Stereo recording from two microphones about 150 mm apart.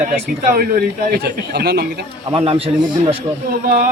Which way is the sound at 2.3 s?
40° right (ahead or behind).